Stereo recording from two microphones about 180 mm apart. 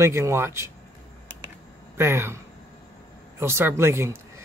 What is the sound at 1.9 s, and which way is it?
Speech, 15° right (ahead or behind).